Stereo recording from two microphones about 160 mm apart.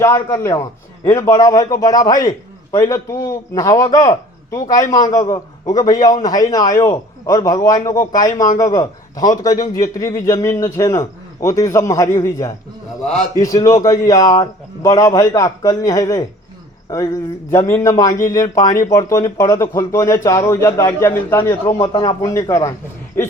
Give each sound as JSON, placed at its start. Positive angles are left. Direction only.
{"t": 0.0, "sound": "a man's voice", "side_deg": 20}